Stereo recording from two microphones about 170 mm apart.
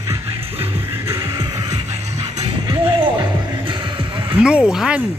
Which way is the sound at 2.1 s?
40° right (ahead or behind).